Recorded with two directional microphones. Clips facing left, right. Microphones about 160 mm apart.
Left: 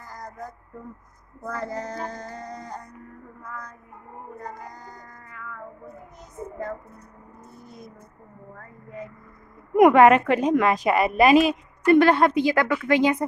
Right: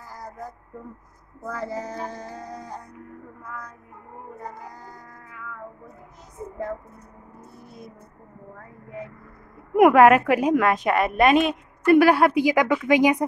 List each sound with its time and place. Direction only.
1.4 s female singing: 5° right (ahead or behind)
4.4 s speech: 5° right (ahead or behind)
9.8 s a woman's voice: 5° right (ahead or behind)